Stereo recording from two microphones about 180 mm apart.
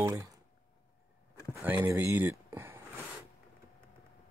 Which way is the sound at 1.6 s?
10° right (ahead or behind).